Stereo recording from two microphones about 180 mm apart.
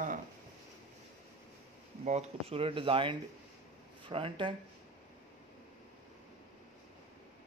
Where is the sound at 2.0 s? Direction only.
35° right (ahead or behind).